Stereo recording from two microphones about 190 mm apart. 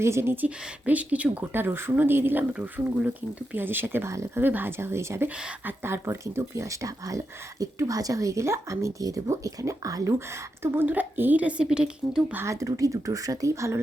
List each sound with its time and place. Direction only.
0.0 s speech: 15° right (ahead or behind)